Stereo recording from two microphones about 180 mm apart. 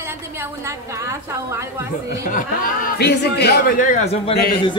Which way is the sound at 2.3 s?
60° left (ahead or behind).